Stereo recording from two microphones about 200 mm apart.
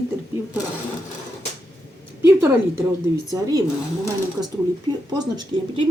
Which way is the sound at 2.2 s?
15° right (ahead or behind).